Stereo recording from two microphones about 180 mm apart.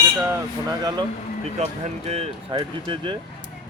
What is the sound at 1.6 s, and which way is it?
Speech, 35° right (ahead or behind).